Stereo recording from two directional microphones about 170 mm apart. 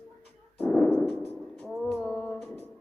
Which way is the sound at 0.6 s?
5° left (ahead or behind).